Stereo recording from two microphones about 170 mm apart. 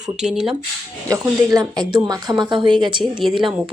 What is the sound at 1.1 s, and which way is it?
Speech, 20° right (ahead or behind).